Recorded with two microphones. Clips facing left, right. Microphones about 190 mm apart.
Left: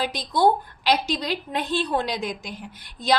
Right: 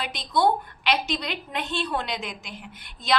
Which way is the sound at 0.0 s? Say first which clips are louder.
Left 3 dB; 35° left (ahead or behind).